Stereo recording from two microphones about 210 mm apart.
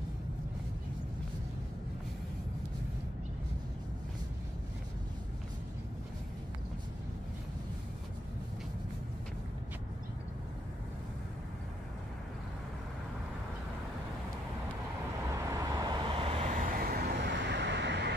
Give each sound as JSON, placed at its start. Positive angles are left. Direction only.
{"t": 15.3, "sound": "vehicle", "side_deg": -15}